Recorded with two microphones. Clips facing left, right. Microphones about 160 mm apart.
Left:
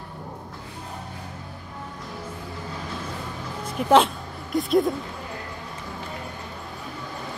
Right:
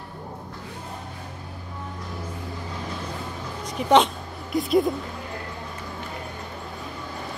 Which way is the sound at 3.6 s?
5° left (ahead or behind).